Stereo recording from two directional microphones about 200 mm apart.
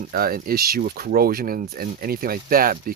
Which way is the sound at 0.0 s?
45° right (ahead or behind).